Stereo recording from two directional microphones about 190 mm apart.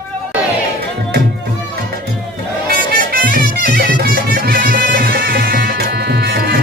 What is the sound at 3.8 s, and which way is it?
Music, 55° right (ahead or behind).